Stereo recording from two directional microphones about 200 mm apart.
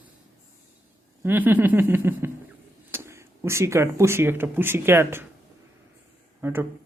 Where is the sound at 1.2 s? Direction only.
10° right (ahead or behind).